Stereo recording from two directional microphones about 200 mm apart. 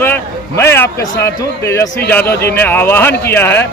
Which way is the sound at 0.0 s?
10° left (ahead or behind).